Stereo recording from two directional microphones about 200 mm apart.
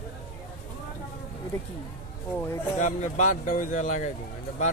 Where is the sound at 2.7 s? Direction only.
35° left (ahead or behind).